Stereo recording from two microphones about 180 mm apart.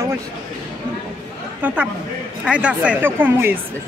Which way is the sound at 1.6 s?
10° right (ahead or behind).